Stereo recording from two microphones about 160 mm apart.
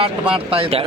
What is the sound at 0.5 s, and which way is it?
Speech, 35° right (ahead or behind).